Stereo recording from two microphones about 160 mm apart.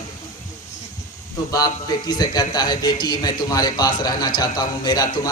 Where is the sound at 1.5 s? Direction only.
20° left (ahead or behind).